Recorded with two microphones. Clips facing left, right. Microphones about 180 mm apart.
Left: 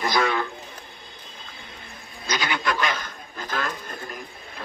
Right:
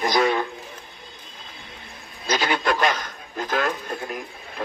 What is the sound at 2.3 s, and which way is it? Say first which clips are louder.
A man's voice: right 4 dB; 40° right (ahead or behind).